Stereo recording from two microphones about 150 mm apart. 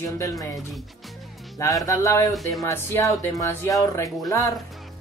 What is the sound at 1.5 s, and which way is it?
Speech, 20° left (ahead or behind).